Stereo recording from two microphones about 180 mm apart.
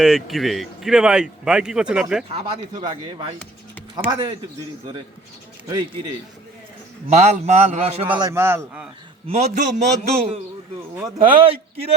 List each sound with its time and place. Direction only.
0.0 s a man's voice: centre (ahead or behind)
2.3 s speech: 25° right (ahead or behind)
7.1 s a man's voice: 40° right (ahead or behind)
8.2 s a man's voice: 15° right (ahead or behind)
9.2 s a man's voice: 35° right (ahead or behind)